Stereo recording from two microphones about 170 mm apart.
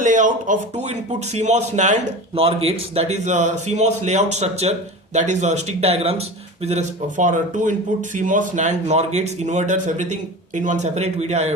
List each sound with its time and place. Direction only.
0.0 s speech: 50° right (ahead or behind)